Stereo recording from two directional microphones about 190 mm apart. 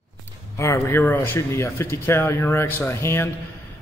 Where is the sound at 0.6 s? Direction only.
15° left (ahead or behind).